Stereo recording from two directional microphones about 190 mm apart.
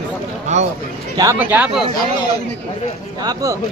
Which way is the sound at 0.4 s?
35° right (ahead or behind).